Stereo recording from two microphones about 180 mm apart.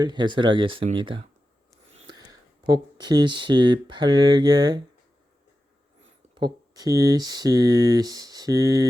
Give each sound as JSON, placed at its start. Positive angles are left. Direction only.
{"t": 0.0, "sound": "speech", "side_deg": -25}
{"t": 1.9, "sound": "a sound", "side_deg": -35}
{"t": 2.6, "sound": "speech", "side_deg": -25}
{"t": 6.3, "sound": "speech", "side_deg": -25}